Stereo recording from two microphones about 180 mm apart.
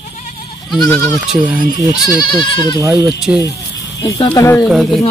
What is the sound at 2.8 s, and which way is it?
Speech, 20° right (ahead or behind).